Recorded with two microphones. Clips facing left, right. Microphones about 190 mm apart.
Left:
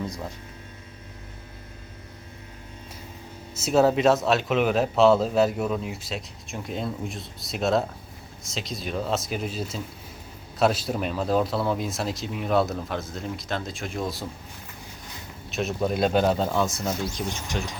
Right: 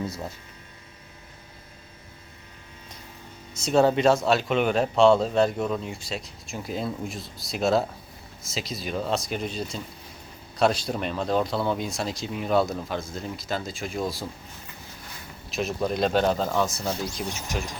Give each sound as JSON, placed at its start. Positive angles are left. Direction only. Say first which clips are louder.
{"t": 0.0, "sound": "speech", "louder": "right 1 dB", "side_deg": -5}
{"t": 3.5, "sound": "speech", "louder": "even", "side_deg": 5}
{"t": 15.4, "sound": "speech", "louder": "left 1 dB", "side_deg": 0}